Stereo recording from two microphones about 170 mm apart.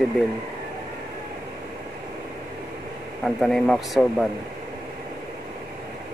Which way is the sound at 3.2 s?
Centre (ahead or behind).